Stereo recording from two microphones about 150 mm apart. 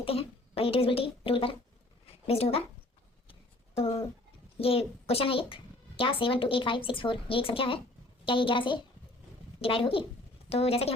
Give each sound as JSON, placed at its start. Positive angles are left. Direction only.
{"t": 0.0, "sound": "a woman's voice", "side_deg": 40}
{"t": 3.8, "sound": "a woman's voice", "side_deg": 40}